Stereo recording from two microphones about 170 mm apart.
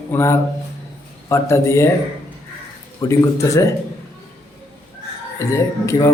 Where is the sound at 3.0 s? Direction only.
15° left (ahead or behind).